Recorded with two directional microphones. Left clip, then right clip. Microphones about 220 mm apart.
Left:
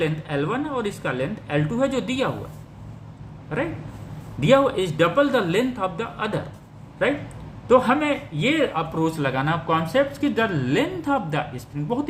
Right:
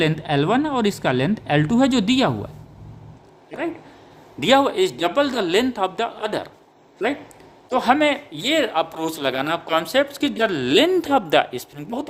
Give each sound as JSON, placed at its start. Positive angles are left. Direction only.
{"t": 0.0, "sound": "speech", "side_deg": -55}
{"t": 4.4, "sound": "speech", "side_deg": -55}
{"t": 7.8, "sound": "a man's voice", "side_deg": -55}